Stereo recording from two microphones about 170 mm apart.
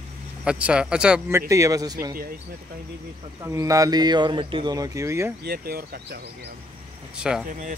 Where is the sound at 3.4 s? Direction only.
20° right (ahead or behind).